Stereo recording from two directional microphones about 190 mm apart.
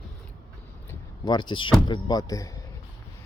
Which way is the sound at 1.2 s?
25° left (ahead or behind).